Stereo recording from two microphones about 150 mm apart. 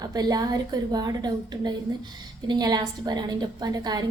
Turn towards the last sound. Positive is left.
turn(degrees=-25)  # may be behind; listen again after turning